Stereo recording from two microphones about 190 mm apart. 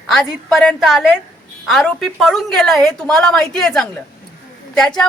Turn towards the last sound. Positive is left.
turn(degrees=5)  # may be behind; listen again after turning